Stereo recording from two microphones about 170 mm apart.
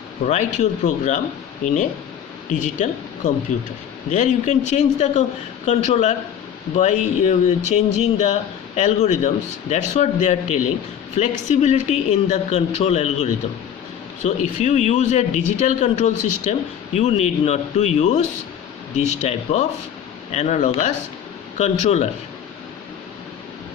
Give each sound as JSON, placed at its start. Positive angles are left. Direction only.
{"t": 0.3, "sound": "a man's voice", "side_deg": 45}